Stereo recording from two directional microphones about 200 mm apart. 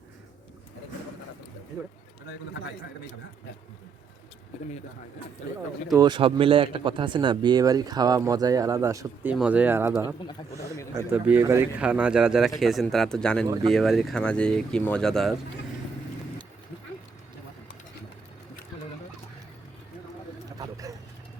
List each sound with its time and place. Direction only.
2.5 s a man's voice: 65° left (ahead or behind)
6.0 s speech: 25° right (ahead or behind); by 15.4 s centre (ahead or behind)
20.6 s a sound: 15° right (ahead or behind)